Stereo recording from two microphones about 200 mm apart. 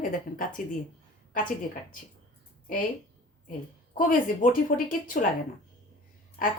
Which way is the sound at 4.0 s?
40° left (ahead or behind).